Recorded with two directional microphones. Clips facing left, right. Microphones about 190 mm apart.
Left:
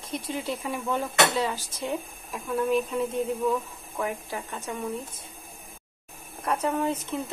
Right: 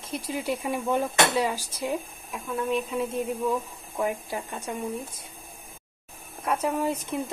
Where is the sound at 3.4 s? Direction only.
20° right (ahead or behind).